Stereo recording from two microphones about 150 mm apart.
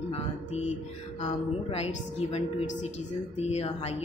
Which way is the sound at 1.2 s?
45° left (ahead or behind).